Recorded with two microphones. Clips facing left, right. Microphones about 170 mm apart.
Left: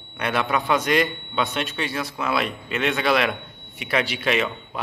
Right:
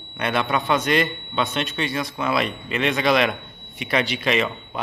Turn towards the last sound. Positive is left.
turn(degrees=5)  # may be behind; listen again after turning